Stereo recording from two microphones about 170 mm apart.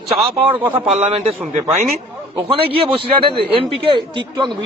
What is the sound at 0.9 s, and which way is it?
A man's voice, 40° right (ahead or behind).